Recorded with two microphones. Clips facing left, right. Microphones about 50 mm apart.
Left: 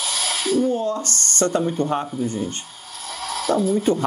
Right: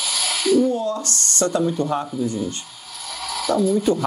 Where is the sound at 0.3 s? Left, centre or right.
Right.